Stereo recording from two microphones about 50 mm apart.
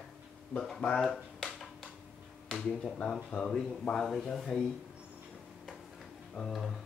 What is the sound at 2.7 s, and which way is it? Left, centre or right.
Speech, centre.